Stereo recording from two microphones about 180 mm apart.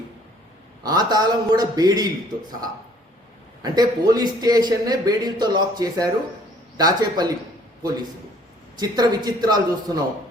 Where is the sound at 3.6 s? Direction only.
20° right (ahead or behind).